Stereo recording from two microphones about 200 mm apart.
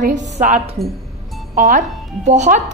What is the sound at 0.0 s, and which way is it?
A woman's voice, 35° right (ahead or behind).